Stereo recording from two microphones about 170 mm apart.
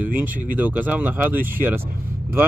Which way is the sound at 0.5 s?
10° right (ahead or behind).